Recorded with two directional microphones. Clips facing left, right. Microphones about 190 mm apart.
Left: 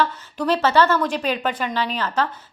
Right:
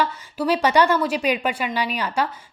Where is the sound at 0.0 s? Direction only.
10° right (ahead or behind).